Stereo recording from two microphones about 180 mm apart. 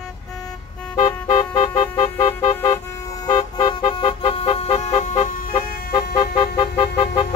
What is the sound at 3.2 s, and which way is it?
Vehicle, 25° left (ahead or behind).